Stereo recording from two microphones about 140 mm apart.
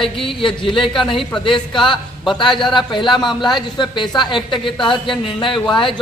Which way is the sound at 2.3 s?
35° left (ahead or behind).